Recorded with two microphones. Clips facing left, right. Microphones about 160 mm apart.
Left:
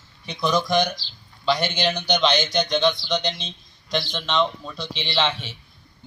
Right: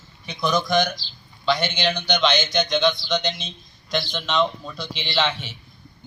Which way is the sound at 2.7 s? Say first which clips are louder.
Even; centre (ahead or behind).